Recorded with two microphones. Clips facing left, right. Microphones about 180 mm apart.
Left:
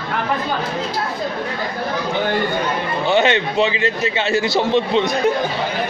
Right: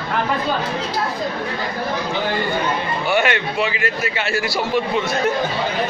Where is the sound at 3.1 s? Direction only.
25° left (ahead or behind).